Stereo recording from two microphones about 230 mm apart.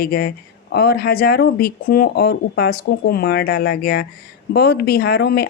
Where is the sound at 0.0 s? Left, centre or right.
Left.